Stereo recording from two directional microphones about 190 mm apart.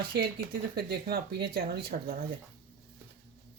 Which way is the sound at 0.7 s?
55° right (ahead or behind).